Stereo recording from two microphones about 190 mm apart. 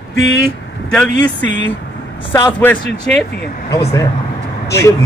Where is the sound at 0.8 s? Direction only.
5° left (ahead or behind).